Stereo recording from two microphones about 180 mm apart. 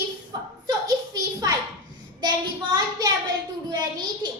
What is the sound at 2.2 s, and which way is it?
Child singing, 20° right (ahead or behind).